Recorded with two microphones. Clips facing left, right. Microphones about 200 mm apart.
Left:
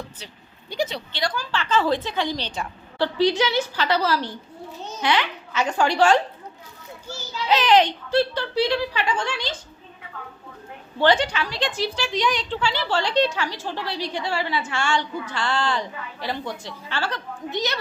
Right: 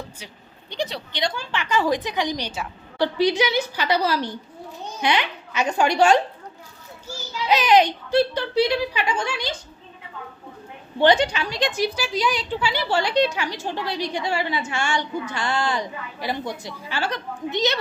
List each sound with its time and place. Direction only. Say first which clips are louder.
0.7 s speech: left 2 dB; centre (ahead or behind)
1.1 s a woman's voice: even; 25° right (ahead or behind)
7.4 s a woman's voice: right 1 dB; 15° right (ahead or behind)
11.0 s a woman's voice: right 2 dB; 15° right (ahead or behind)
11.8 s a woman's voice: left 1 dB; 5° right (ahead or behind)